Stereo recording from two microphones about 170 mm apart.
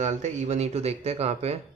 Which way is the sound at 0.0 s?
40° right (ahead or behind).